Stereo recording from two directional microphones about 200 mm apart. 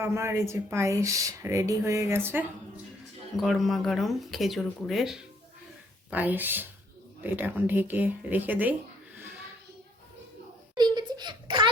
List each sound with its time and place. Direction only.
0.0 s speech: 15° right (ahead or behind)
3.3 s speech: centre (ahead or behind)
10.8 s a sound: 20° right (ahead or behind)